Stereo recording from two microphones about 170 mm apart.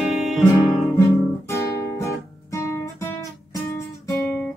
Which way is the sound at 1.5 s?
15° left (ahead or behind).